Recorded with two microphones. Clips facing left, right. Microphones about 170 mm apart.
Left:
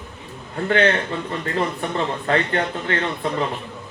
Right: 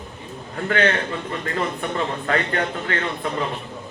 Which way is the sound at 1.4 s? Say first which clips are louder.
Left 2 dB; 30° left (ahead or behind).